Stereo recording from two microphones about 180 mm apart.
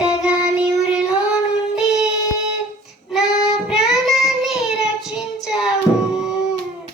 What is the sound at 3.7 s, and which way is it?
Child singing, centre (ahead or behind).